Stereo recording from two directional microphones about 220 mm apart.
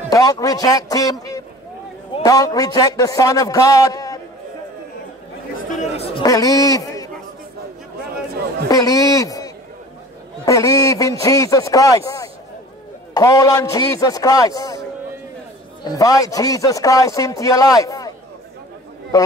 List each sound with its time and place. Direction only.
0.1 s speech: 15° left (ahead or behind)
2.2 s speech: 15° left (ahead or behind)
5.7 s speech: 30° left (ahead or behind)
6.2 s speech: 15° left (ahead or behind)
8.6 s speech: 15° left (ahead or behind)
15.8 s speech: 15° left (ahead or behind)
19.1 s speech: 15° left (ahead or behind)